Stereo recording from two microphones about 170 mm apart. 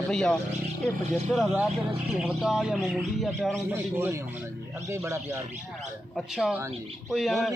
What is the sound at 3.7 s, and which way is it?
Speech, 15° right (ahead or behind).